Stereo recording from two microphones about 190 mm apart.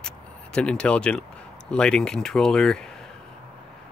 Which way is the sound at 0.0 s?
5° left (ahead or behind).